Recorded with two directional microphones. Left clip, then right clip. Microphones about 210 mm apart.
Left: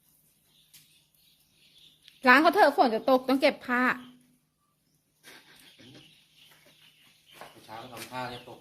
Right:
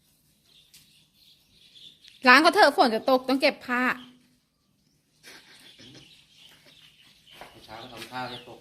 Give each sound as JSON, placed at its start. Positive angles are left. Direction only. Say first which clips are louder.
{"t": 2.0, "sound": "a woman's voice", "louder": "right 3 dB", "side_deg": -5}
{"t": 5.2, "sound": "a sound", "louder": "right 3 dB", "side_deg": 0}
{"t": 7.7, "sound": "bird", "louder": "even", "side_deg": 0}
{"t": 8.1, "sound": "a woman's voice", "louder": "right 2 dB", "side_deg": 5}